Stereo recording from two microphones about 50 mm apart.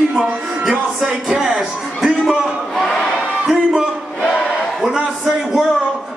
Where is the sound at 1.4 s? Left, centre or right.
Centre.